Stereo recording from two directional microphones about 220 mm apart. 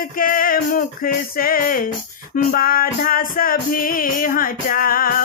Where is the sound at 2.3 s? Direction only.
40° left (ahead or behind).